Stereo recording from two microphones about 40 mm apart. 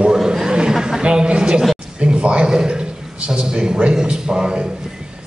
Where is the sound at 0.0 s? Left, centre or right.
Centre.